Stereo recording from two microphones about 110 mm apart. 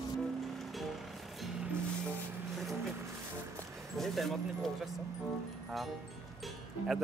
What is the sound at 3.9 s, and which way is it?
Keys jangling, centre (ahead or behind).